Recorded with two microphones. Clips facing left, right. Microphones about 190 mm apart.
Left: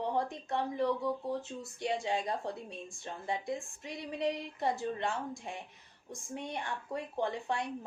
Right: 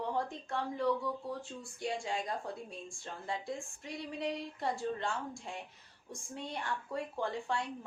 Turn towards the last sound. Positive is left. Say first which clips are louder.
# left 2 dB
turn(degrees=20)  # may be behind; listen again after turning